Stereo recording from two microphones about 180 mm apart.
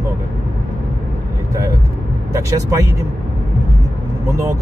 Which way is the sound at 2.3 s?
20° right (ahead or behind).